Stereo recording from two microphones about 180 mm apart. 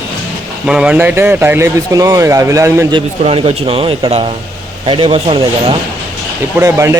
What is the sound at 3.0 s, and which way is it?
Speech, 30° right (ahead or behind).